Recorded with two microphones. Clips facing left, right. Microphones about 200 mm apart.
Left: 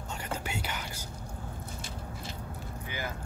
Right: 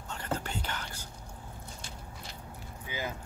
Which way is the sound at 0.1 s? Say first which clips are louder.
Right 1 dB; 10° left (ahead or behind).